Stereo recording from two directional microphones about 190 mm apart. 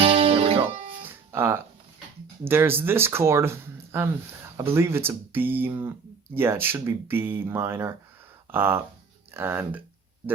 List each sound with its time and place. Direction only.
0.0 s music: 30° right (ahead or behind)
1.0 s music: 10° right (ahead or behind)
2.5 s speech: 10° right (ahead or behind)